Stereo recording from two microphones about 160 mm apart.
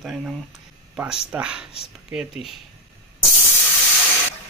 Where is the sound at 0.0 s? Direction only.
Centre (ahead or behind).